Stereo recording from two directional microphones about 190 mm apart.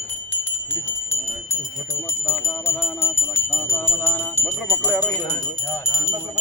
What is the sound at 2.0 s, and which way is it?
Jingle bell, 15° left (ahead or behind).